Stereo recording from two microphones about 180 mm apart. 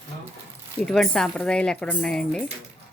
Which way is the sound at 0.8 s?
5° left (ahead or behind).